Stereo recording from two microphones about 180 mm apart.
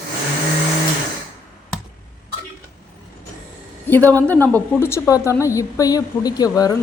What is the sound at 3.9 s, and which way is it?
A woman's voice, 10° left (ahead or behind).